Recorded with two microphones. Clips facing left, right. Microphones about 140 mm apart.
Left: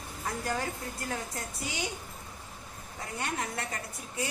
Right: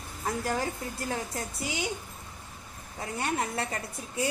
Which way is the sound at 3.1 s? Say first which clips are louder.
Right 4 dB; 30° right (ahead or behind).